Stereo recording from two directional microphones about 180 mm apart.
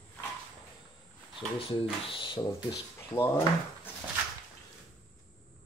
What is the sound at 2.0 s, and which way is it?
Speech, 30° left (ahead or behind).